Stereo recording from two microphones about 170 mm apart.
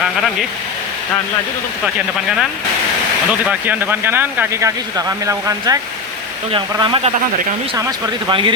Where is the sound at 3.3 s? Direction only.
10° right (ahead or behind).